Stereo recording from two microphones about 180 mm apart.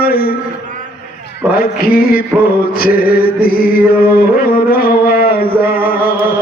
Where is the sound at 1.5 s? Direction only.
55° left (ahead or behind).